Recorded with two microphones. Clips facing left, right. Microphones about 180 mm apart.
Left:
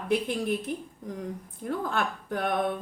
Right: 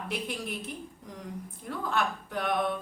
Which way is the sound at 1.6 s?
50° left (ahead or behind).